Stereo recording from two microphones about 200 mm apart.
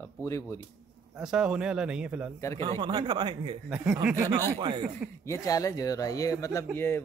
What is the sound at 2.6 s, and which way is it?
Speech, 25° right (ahead or behind).